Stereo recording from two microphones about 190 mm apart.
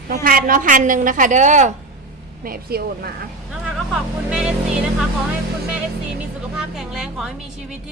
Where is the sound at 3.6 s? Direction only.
5° right (ahead or behind).